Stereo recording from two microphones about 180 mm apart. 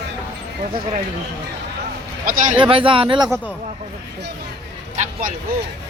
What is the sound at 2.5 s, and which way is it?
Speech, 25° right (ahead or behind).